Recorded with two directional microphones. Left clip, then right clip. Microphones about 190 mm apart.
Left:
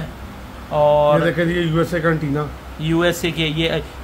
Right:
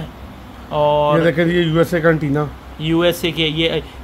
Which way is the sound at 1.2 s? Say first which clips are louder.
Right 3 dB; 40° right (ahead or behind).